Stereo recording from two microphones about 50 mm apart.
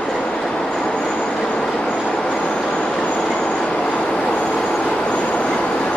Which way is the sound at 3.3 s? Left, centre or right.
Left.